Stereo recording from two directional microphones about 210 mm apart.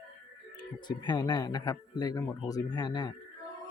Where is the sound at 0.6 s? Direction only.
20° left (ahead or behind).